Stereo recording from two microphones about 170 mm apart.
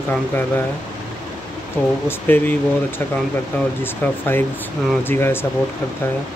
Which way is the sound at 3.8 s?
10° left (ahead or behind).